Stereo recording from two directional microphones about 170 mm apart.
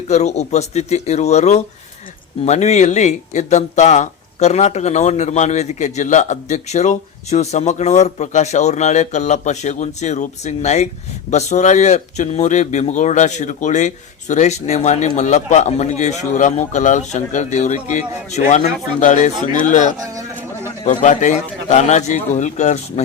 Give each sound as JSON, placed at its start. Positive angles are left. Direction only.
{"t": 0.1, "sound": "speech", "side_deg": 40}